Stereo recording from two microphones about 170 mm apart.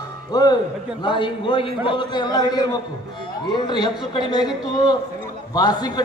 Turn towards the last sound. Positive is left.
turn(degrees=25)  # may be behind; listen again after turning